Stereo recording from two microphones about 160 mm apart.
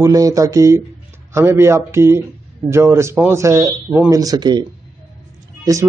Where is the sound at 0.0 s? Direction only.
20° right (ahead or behind).